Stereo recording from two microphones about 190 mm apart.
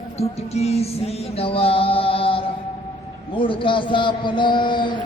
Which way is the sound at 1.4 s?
30° left (ahead or behind).